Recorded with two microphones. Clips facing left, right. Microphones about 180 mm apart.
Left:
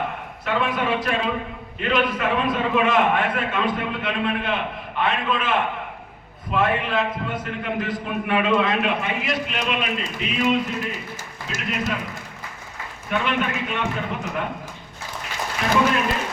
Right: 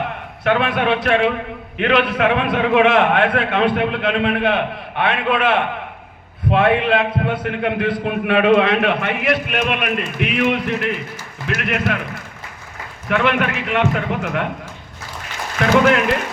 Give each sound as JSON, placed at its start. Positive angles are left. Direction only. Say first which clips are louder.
{"t": 0.4, "sound": "a man's voice", "louder": "right 6 dB", "side_deg": -70}
{"t": 13.1, "sound": "a man's voice", "louder": "right 6 dB", "side_deg": -65}
{"t": 15.6, "sound": "a man's voice", "louder": "right 6 dB", "side_deg": -75}